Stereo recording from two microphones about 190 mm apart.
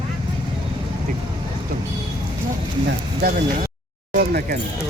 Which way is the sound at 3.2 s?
55° right (ahead or behind).